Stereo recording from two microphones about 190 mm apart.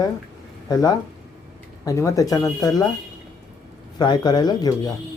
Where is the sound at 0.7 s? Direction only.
20° left (ahead or behind).